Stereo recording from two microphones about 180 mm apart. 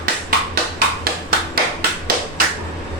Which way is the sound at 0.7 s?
55° right (ahead or behind).